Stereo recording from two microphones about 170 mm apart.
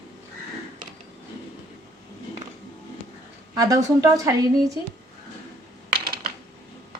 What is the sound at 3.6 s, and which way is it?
Speech, 20° right (ahead or behind).